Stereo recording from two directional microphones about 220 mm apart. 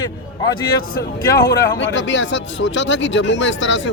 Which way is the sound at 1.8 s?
60° left (ahead or behind).